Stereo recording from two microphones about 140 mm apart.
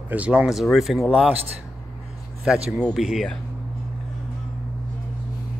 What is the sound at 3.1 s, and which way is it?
Speech, 5° left (ahead or behind).